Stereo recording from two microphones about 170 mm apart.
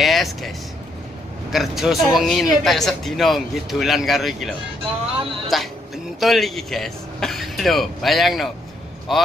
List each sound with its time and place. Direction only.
0.0 s vehicle: centre (ahead or behind)
1.5 s speech: centre (ahead or behind)